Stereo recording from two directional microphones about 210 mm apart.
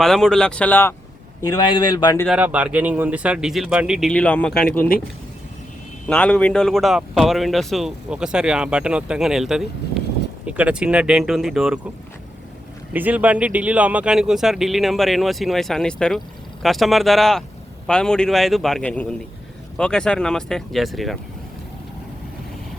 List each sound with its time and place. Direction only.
0.0 s a man's voice: centre (ahead or behind)
1.5 s speech: 20° left (ahead or behind)
2.2 s a man's voice: 5° right (ahead or behind)
6.1 s a man's voice: 5° left (ahead or behind)
12.9 s a man's voice: 10° right (ahead or behind)